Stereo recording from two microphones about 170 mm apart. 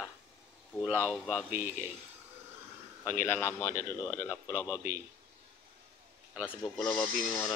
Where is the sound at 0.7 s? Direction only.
10° left (ahead or behind).